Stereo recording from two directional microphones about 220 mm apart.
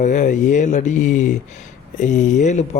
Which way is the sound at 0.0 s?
35° left (ahead or behind).